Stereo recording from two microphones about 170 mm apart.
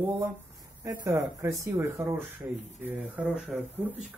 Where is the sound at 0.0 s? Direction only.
10° right (ahead or behind).